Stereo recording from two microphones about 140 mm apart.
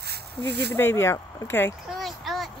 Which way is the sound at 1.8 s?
Centre (ahead or behind).